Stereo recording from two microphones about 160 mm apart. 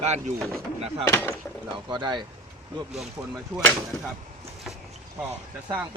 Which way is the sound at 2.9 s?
5° right (ahead or behind).